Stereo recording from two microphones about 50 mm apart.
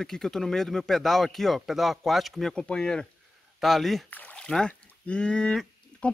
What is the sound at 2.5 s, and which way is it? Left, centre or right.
Speech, centre.